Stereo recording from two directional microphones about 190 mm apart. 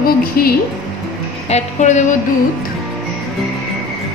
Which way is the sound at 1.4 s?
35° left (ahead or behind).